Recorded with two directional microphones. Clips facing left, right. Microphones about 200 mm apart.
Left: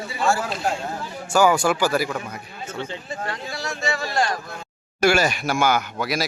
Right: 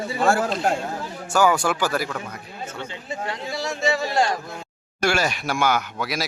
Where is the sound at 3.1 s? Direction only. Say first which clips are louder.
Right 1 dB; 20° right (ahead or behind).